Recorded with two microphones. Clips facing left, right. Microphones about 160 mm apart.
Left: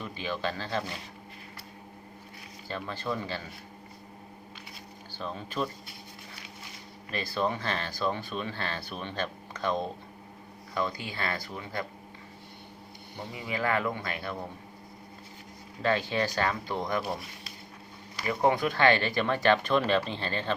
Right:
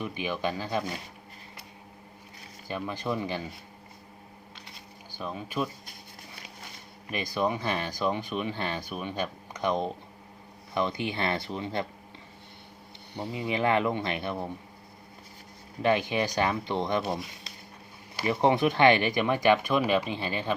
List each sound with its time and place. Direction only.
0.0 s speech: 15° right (ahead or behind)
2.6 s speech: 15° right (ahead or behind)
5.1 s speech: 10° right (ahead or behind)
7.1 s speech: 15° right (ahead or behind)
13.1 s speech: 20° right (ahead or behind)
15.8 s speech: 15° right (ahead or behind)
18.2 s speech: 20° right (ahead or behind)